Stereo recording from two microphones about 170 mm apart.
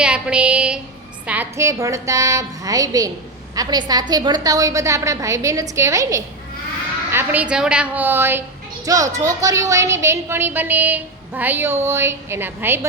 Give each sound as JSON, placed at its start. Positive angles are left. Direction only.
{"t": 0.0, "sound": "a woman's voice", "side_deg": -5}